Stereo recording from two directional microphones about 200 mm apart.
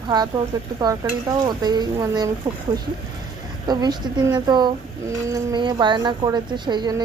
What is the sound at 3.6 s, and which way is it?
Speech, 20° right (ahead or behind).